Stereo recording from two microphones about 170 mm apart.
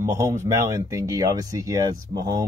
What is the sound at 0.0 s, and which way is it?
Speech, 15° right (ahead or behind).